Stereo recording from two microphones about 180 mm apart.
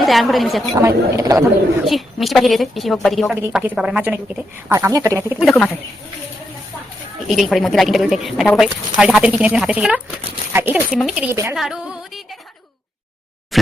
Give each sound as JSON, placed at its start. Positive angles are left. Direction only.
{"t": 0.0, "sound": "a woman's voice", "side_deg": 0}
{"t": 0.8, "sound": "a woman's voice", "side_deg": -15}
{"t": 1.8, "sound": "a woman's voice", "side_deg": 0}
{"t": 5.4, "sound": "a woman's voice", "side_deg": 0}
{"t": 7.3, "sound": "a woman's voice", "side_deg": 0}
{"t": 11.5, "sound": "music", "side_deg": -5}
{"t": 13.5, "sound": "a sound", "side_deg": 0}